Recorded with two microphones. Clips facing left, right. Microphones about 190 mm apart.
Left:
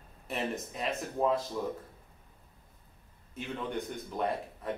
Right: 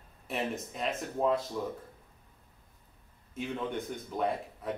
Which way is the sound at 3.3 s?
Centre (ahead or behind).